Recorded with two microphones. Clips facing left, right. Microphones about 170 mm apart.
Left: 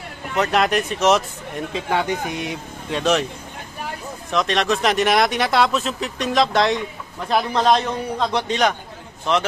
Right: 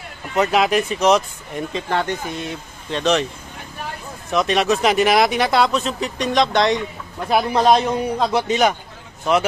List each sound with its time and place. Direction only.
0.4 s speech: centre (ahead or behind)
4.3 s speech: 5° right (ahead or behind)
7.2 s a man's voice: 10° right (ahead or behind)